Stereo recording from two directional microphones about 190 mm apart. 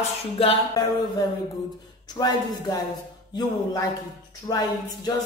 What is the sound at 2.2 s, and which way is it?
Speech, 20° left (ahead or behind).